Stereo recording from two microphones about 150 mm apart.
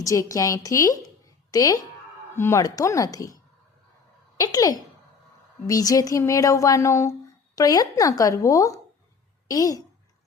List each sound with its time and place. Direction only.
0.0 s a woman's voice: 20° left (ahead or behind)
4.4 s a woman's voice: 25° left (ahead or behind)